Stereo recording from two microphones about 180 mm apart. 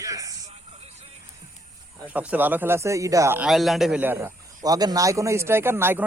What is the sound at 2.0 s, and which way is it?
A man's voice, 10° right (ahead or behind).